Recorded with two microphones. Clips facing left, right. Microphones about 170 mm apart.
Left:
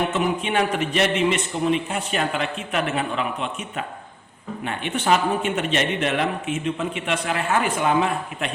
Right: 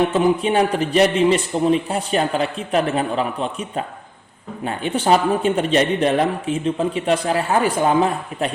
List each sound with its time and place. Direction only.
0.1 s speech: 35° right (ahead or behind)